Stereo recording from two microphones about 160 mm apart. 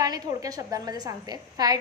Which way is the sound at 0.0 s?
20° right (ahead or behind).